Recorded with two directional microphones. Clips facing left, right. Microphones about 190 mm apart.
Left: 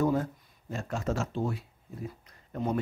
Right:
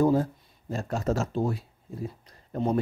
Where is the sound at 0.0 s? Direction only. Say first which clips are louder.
Right 5 dB; 30° right (ahead or behind).